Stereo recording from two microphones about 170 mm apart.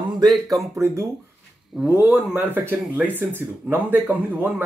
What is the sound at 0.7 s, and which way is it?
Speech, 15° right (ahead or behind).